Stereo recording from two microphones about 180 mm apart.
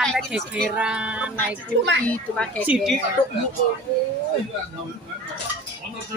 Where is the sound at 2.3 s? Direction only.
5° left (ahead or behind).